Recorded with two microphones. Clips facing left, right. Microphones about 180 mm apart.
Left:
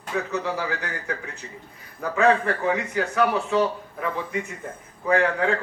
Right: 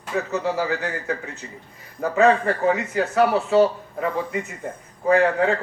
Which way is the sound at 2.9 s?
30° right (ahead or behind).